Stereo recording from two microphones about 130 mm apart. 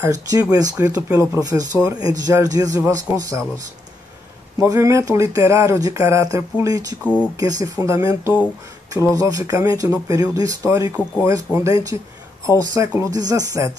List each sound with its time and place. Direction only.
0.0 s speech: 25° right (ahead or behind)
4.6 s speech: 25° right (ahead or behind)
7.0 s speech: 10° right (ahead or behind)
7.3 s speech: 25° right (ahead or behind)